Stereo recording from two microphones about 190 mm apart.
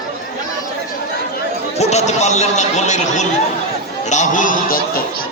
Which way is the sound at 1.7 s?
35° left (ahead or behind).